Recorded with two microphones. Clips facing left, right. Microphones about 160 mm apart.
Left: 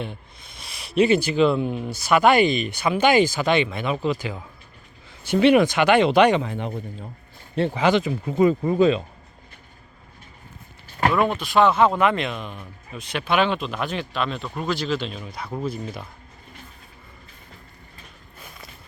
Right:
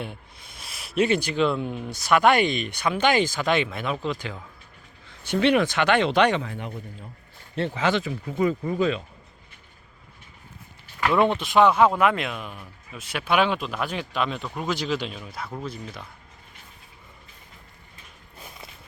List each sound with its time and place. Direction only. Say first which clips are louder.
0.0 s speech: left 2 dB; 10° right (ahead or behind); by 6.4 s 10° left (ahead or behind)
6.4 s speech: left 5 dB; 25° left (ahead or behind)
7.8 s speech: left 4 dB; 15° left (ahead or behind)
11.1 s speech: right 2 dB; 25° right (ahead or behind)
15.2 s speech: left 2 dB; centre (ahead or behind)
15.5 s speech: left 9 dB; 10° left (ahead or behind)